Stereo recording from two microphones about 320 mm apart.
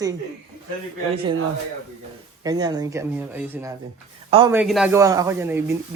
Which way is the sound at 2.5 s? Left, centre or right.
Centre.